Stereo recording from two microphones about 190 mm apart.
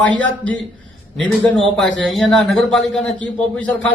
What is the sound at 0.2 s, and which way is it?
A man's voice, 5° left (ahead or behind).